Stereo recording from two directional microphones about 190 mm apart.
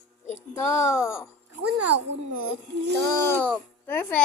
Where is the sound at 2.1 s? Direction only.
70° right (ahead or behind).